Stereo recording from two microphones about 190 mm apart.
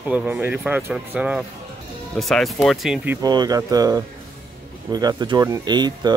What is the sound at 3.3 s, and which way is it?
Speech, 20° right (ahead or behind).